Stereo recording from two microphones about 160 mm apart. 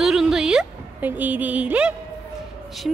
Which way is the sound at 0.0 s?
5° right (ahead or behind).